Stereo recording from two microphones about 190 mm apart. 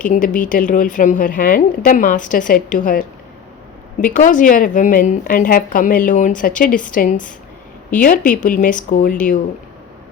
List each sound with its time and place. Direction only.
0.1 s a woman's voice: 45° left (ahead or behind)
4.0 s a woman's voice: 45° left (ahead or behind)